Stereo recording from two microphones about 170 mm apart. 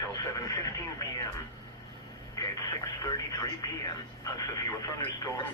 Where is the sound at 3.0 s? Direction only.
20° left (ahead or behind).